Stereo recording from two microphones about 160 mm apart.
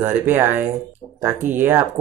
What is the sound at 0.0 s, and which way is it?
Speech, 15° right (ahead or behind).